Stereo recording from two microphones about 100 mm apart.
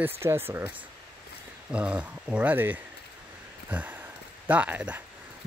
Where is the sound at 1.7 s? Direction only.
10° right (ahead or behind).